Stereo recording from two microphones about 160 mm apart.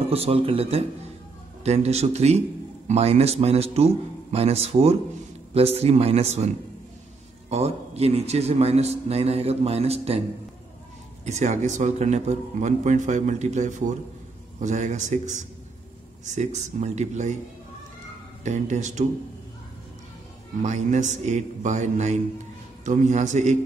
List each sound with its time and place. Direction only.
0.1 s a man's voice: 40° right (ahead or behind)
11.2 s a man's voice: 45° right (ahead or behind)
18.4 s a man's voice: 50° right (ahead or behind)
20.6 s a man's voice: 50° right (ahead or behind)